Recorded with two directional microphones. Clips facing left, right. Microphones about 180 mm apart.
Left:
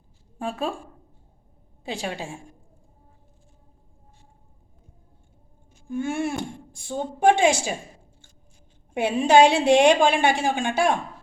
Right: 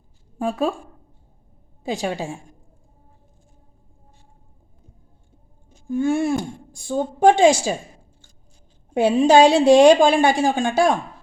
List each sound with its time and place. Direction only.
1.8 s a woman's voice: 40° right (ahead or behind)
5.9 s a woman's voice: 40° right (ahead or behind)
8.9 s a woman's voice: 40° right (ahead or behind)